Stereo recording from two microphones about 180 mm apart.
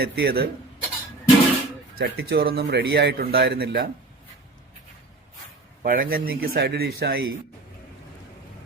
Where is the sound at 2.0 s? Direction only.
60° right (ahead or behind).